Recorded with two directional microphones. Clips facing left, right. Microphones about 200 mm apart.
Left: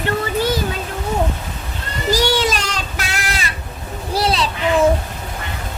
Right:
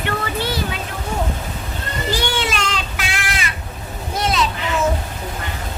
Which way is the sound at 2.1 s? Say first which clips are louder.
Left 6 dB; 40° left (ahead or behind).